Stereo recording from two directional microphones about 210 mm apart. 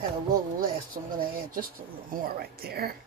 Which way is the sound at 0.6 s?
45° right (ahead or behind).